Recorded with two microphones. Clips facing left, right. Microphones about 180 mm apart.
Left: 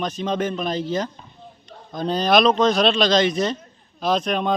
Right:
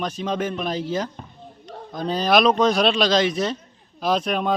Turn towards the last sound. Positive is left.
turn(degrees=-5)  # may be behind; listen again after turning